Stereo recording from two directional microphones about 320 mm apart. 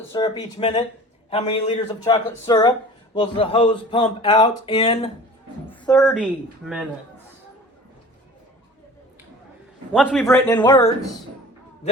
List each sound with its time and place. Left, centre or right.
0.1 s a woman's voice: centre
9.9 s a man's voice: centre